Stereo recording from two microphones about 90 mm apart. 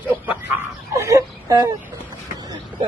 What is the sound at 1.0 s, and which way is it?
Speech, 40° right (ahead or behind).